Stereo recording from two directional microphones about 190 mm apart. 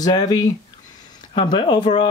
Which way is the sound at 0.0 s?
20° left (ahead or behind).